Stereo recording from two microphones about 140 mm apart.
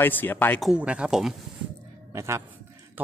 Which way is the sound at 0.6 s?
5° right (ahead or behind).